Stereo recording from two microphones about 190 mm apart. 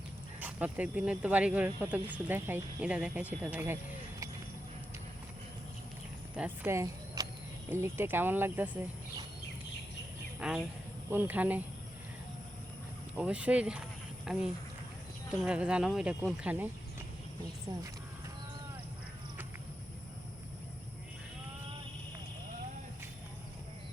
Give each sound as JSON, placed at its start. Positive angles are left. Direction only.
{"t": 0.3, "sound": "speech", "side_deg": -10}
{"t": 6.3, "sound": "speech", "side_deg": -10}
{"t": 10.4, "sound": "speech", "side_deg": -5}
{"t": 13.1, "sound": "speech", "side_deg": -5}
{"t": 17.7, "sound": "speech", "side_deg": -20}